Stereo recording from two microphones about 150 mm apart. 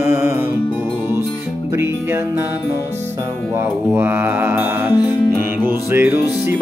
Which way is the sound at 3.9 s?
15° right (ahead or behind).